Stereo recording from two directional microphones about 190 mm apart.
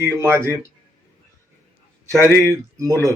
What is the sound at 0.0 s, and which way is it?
Speech, 10° right (ahead or behind).